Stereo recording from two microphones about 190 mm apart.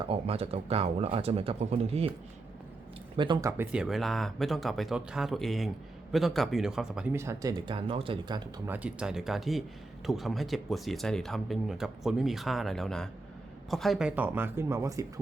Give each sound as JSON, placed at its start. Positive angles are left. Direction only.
{"t": 0.0, "sound": "speech", "side_deg": -30}
{"t": 3.2, "sound": "speech", "side_deg": -25}
{"t": 3.6, "sound": "speech", "side_deg": -5}
{"t": 7.6, "sound": "speech", "side_deg": -30}
{"t": 8.6, "sound": "speech", "side_deg": -10}